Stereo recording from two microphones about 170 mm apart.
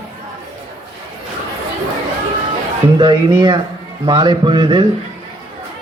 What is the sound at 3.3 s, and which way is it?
Speech, 25° right (ahead or behind).